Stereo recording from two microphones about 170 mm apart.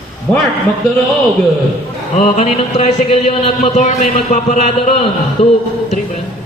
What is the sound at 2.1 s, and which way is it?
Speech, 40° left (ahead or behind).